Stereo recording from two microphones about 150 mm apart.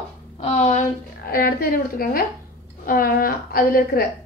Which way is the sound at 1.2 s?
80° left.